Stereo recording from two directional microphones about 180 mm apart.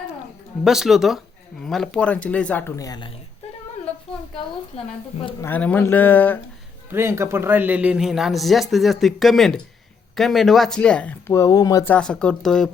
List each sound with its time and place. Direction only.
0.6 s speech: centre (ahead or behind); by 3.1 s 20° left (ahead or behind)
4.7 s a woman's voice: 35° left (ahead or behind)
5.4 s speech: 10° left (ahead or behind)
6.9 s a man's voice: 15° right (ahead or behind); by 11.9 s 20° left (ahead or behind)
11.9 s speech: 5° left (ahead or behind)